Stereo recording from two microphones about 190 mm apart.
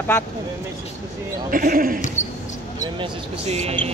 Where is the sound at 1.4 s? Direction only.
50° right (ahead or behind).